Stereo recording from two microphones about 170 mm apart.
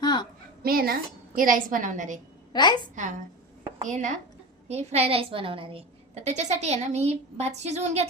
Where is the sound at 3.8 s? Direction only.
45° right (ahead or behind).